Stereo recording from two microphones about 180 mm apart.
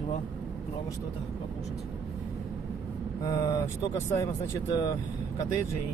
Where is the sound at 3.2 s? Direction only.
20° left (ahead or behind).